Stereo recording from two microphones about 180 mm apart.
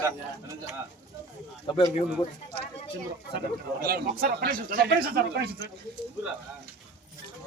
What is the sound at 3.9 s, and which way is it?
Speech, 55° right (ahead or behind).